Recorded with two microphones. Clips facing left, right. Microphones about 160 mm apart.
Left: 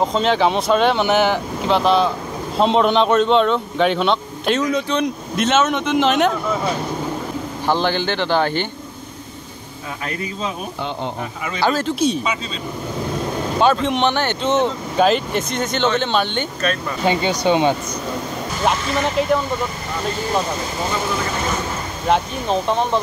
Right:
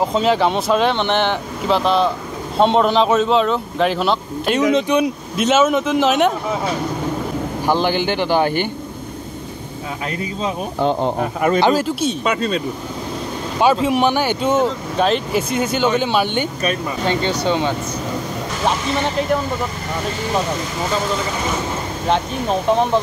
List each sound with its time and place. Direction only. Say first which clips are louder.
0.1 s speech: right 1 dB; 5° right (ahead or behind)
4.7 s speech: right 4 dB; 15° right (ahead or behind)
5.0 s speech: right 1 dB; 5° right (ahead or behind)
7.6 s speech: right 1 dB; 15° right (ahead or behind)
10.8 s speech: right 10 dB; 40° right (ahead or behind)
11.6 s speech: right 2 dB; 10° right (ahead or behind)
12.3 s speech: right 6 dB; 60° right (ahead or behind)
13.6 s speech: right 2 dB; 10° right (ahead or behind)
17.0 s speech: left 2 dB; 10° left (ahead or behind)